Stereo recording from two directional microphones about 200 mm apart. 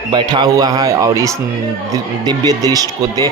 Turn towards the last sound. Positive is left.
turn(degrees=-20)  # may be behind; listen again after turning